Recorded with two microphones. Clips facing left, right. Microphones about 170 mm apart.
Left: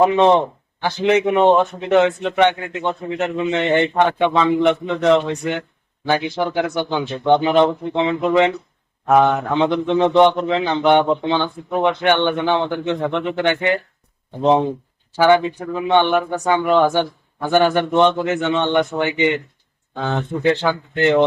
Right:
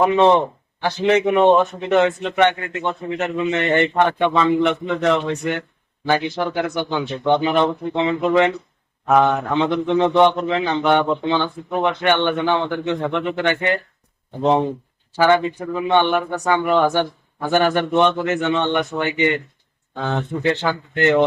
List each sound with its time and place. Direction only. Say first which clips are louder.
0.0 s a man's voice: left 1 dB; 15° left (ahead or behind)
15.1 s a man's voice: left 2 dB; 10° left (ahead or behind)
20.4 s a man's voice: left 5 dB; 15° left (ahead or behind)